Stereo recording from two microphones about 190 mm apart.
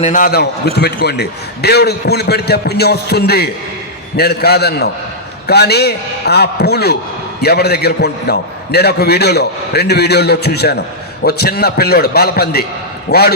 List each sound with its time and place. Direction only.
0.0 s a man's voice: 45° left (ahead or behind)